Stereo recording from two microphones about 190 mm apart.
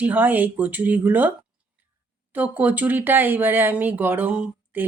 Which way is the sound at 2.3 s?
10° right (ahead or behind).